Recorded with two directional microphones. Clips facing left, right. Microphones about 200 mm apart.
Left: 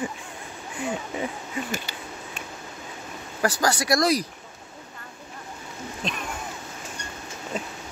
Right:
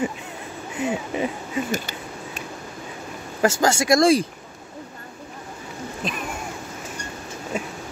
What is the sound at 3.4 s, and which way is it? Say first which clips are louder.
Speech: right 5 dB; 25° right (ahead or behind).